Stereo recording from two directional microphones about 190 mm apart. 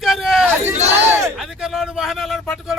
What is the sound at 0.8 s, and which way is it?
Battle cry, 35° right (ahead or behind).